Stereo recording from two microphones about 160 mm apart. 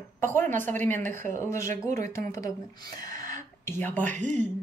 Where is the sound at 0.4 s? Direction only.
10° left (ahead or behind).